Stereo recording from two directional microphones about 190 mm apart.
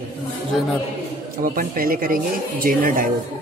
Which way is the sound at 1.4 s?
50° right (ahead or behind).